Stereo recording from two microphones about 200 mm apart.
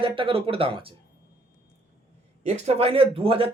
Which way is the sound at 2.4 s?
35° right (ahead or behind).